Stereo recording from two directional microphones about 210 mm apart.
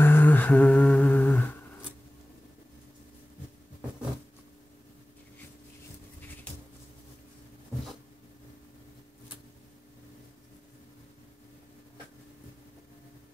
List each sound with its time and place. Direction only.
0.0 s humming: 10° left (ahead or behind)